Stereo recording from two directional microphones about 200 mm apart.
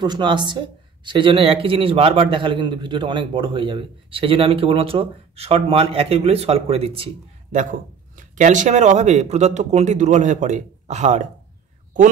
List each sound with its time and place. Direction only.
0.0 s a man's voice: 25° right (ahead or behind)
8.2 s speech: 40° right (ahead or behind)